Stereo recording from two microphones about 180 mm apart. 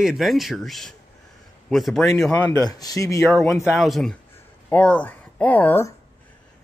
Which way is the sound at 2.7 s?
20° left (ahead or behind).